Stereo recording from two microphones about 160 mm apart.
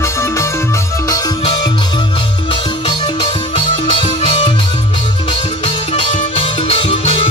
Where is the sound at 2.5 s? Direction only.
35° left (ahead or behind).